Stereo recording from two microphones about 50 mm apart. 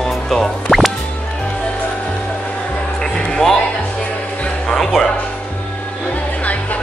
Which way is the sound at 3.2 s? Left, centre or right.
Centre.